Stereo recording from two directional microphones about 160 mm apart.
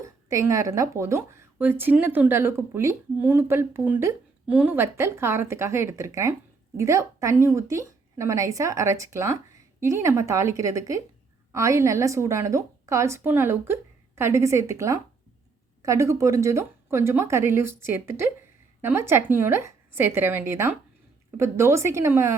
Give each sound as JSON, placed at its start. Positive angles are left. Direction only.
{"t": 0.0, "sound": "a woman's voice", "side_deg": -20}